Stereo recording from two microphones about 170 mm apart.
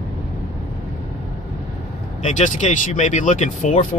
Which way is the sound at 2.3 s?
40° left (ahead or behind).